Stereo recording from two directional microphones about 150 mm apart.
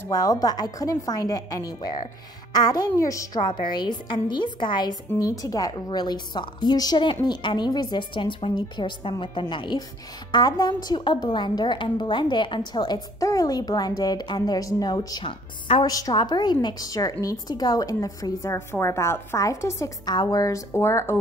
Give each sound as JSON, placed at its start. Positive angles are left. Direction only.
{"t": 0.1, "sound": "a woman's voice", "side_deg": 25}